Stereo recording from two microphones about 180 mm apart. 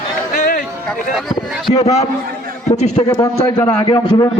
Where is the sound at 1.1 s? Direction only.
Centre (ahead or behind).